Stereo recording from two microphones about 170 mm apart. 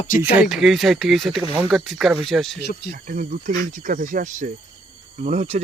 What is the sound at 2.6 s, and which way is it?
Speech, 80° left.